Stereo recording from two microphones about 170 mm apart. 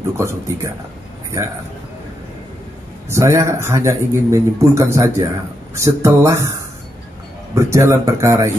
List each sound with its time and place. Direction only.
0.2 s a man's voice: 15° right (ahead or behind)
3.1 s a man's voice: 15° right (ahead or behind)
7.5 s a man's voice: 15° right (ahead or behind)